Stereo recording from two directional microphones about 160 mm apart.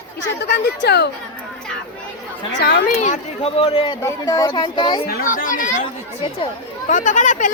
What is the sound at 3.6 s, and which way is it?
Speech, 35° left (ahead or behind).